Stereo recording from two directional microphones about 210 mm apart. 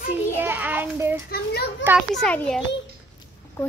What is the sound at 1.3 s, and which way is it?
Speech, 50° left (ahead or behind).